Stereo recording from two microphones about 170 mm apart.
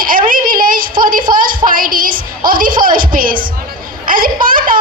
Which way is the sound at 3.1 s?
55° right (ahead or behind).